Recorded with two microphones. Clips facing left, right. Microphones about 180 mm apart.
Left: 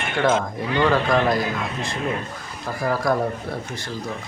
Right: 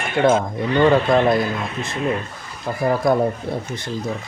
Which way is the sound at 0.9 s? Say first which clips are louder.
Right 3 dB; 25° right (ahead or behind).